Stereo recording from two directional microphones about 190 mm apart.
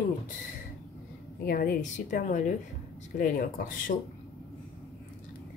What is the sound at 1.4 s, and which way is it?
Speech, 50° left (ahead or behind).